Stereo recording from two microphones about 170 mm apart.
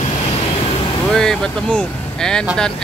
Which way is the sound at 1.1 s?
5° left (ahead or behind).